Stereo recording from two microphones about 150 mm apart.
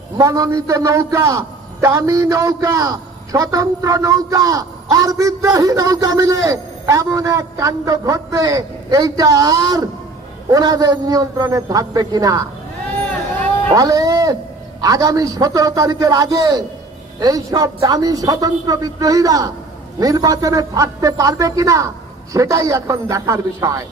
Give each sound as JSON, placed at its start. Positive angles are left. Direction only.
{"t": 0.2, "sound": "a man's voice", "side_deg": -20}
{"t": 13.7, "sound": "a man's voice", "side_deg": -25}